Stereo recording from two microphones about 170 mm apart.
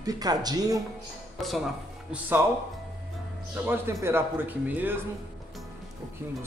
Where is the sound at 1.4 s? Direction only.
Centre (ahead or behind).